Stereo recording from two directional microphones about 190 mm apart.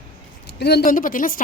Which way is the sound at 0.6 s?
60° left (ahead or behind).